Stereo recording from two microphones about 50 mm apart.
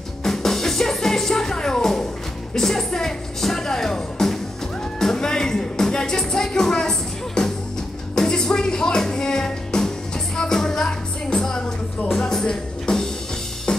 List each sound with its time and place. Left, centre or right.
0.2 s music: centre
2.5 s speech: centre
4.9 s music: centre